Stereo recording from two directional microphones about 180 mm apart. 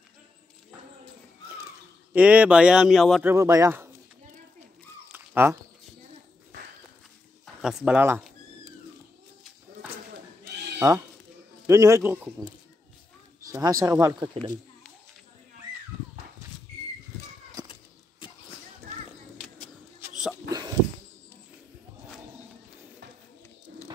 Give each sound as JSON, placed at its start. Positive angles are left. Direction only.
{"t": 2.1, "sound": "speech", "side_deg": -5}
{"t": 3.3, "sound": "a man's voice", "side_deg": -15}
{"t": 5.1, "sound": "a sound", "side_deg": -10}
{"t": 7.6, "sound": "a man's voice", "side_deg": -5}
{"t": 11.6, "sound": "a man's voice", "side_deg": -15}
{"t": 13.5, "sound": "speech", "side_deg": -20}
{"t": 20.4, "sound": "a sound", "side_deg": -20}